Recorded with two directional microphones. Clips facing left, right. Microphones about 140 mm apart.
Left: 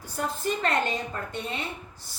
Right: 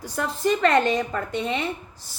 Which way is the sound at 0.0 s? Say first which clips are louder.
Right 5 dB; 90° right.